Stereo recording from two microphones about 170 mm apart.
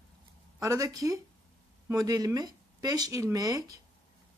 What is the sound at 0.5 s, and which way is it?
Speech, 20° right (ahead or behind).